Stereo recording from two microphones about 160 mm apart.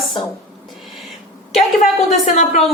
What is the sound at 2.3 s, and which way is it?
Speech, 50° left (ahead or behind).